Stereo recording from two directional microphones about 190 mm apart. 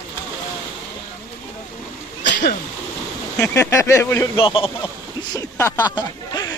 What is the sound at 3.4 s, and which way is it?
Speech, 15° left (ahead or behind).